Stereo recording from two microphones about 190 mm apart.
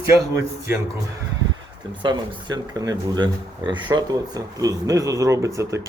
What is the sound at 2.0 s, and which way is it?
Speech, 25° right (ahead or behind).